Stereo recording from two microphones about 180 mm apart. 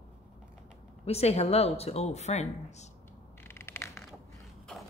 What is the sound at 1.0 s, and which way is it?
A woman's voice, 35° left (ahead or behind).